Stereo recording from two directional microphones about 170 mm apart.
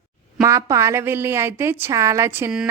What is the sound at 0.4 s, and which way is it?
Speech, 20° right (ahead or behind).